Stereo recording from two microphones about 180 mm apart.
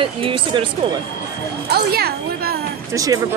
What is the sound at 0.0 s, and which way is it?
Speech, 30° right (ahead or behind).